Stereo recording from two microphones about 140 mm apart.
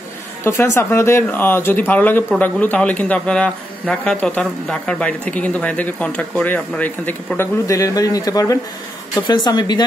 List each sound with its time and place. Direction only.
0.4 s speech: 20° left (ahead or behind)